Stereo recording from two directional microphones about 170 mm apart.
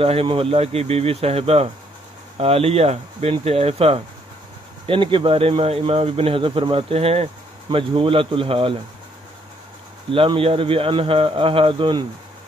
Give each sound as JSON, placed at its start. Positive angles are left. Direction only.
{"t": 0.0, "sound": "speech", "side_deg": -35}
{"t": 10.1, "sound": "speech", "side_deg": -30}